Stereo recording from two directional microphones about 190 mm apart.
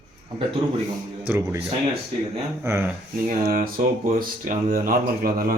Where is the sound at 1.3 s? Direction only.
10° right (ahead or behind).